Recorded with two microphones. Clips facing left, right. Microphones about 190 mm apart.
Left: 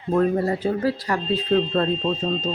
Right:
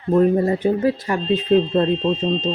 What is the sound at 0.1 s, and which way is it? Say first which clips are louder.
Speech: right 4 dB; 20° right (ahead or behind).